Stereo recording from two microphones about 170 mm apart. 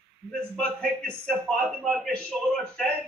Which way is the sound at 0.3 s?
5° left (ahead or behind).